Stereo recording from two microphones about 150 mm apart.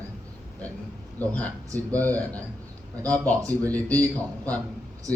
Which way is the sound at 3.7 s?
10° left (ahead or behind).